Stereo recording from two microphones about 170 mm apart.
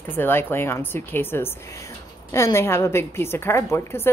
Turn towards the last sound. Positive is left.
turn(degrees=15)  # may be behind; listen again after turning